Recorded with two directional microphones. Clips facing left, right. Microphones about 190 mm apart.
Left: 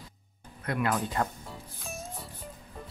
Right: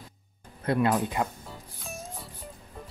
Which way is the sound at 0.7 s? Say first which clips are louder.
Right 5 dB; 30° right (ahead or behind).